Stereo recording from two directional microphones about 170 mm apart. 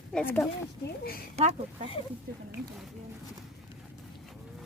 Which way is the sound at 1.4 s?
35° right (ahead or behind).